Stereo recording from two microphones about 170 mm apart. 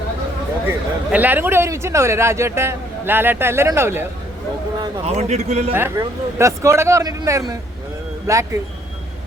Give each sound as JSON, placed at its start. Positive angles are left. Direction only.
{"t": 0.7, "sound": "speech", "side_deg": -10}
{"t": 5.0, "sound": "a man's voice", "side_deg": -40}
{"t": 5.7, "sound": "speech", "side_deg": -15}